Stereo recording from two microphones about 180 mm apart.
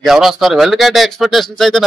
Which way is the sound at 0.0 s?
Centre (ahead or behind).